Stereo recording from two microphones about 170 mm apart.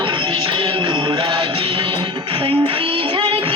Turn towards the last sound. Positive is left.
turn(degrees=-35)  # may be behind; listen again after turning